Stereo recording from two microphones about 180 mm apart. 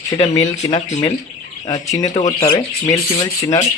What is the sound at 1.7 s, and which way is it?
Speech, 20° left (ahead or behind).